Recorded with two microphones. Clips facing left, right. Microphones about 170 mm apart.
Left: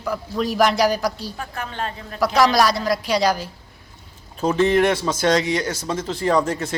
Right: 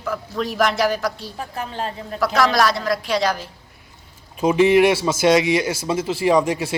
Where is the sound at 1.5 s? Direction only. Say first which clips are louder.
Right 2 dB; 35° right (ahead or behind).